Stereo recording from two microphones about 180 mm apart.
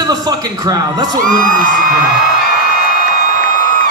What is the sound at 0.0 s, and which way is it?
A woman's voice, 20° right (ahead or behind).